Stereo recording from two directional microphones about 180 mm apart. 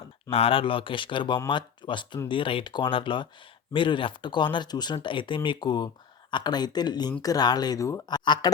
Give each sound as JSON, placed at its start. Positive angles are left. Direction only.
{"t": 0.3, "sound": "speech", "side_deg": 30}